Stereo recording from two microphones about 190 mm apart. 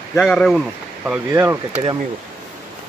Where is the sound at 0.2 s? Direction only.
Centre (ahead or behind).